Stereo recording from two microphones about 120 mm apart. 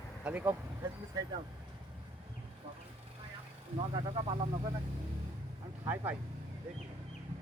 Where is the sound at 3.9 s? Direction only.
45° right (ahead or behind).